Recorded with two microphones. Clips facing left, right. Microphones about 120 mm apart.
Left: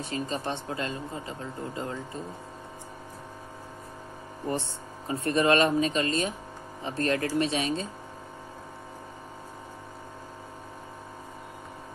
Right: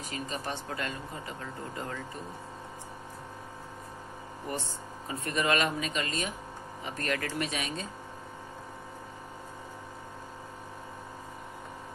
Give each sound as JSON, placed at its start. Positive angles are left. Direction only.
{"t": 0.0, "sound": "speech", "side_deg": 30}
{"t": 4.5, "sound": "speech", "side_deg": 30}